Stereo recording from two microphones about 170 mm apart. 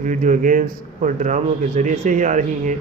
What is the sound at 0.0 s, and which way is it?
A man's voice, 50° right (ahead or behind).